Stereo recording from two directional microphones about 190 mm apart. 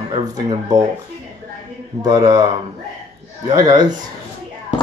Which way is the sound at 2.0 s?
20° right (ahead or behind).